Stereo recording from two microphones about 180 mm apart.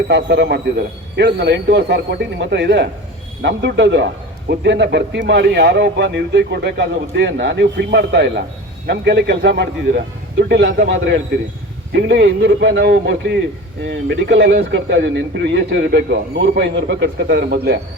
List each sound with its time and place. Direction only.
0.1 s a man's voice: 70° right (ahead or behind)
11.9 s speech: 70° right (ahead or behind)